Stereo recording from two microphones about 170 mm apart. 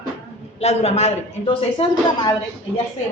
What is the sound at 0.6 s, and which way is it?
A man's voice, 40° left (ahead or behind).